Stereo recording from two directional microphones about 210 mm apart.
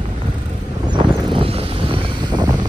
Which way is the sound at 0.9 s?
25° right (ahead or behind).